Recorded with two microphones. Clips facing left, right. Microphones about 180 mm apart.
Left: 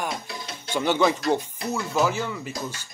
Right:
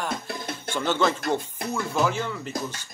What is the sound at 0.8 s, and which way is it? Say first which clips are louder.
Speech: left 3 dB; 15° left (ahead or behind).